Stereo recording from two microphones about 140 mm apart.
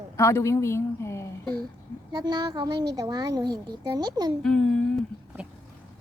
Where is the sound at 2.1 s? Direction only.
30° right (ahead or behind).